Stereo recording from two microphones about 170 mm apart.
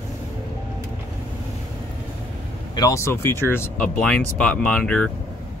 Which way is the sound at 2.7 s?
20° left (ahead or behind).